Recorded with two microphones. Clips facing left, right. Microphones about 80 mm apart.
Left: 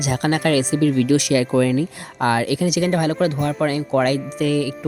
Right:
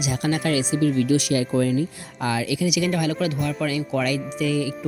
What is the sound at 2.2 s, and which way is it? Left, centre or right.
Speech, left.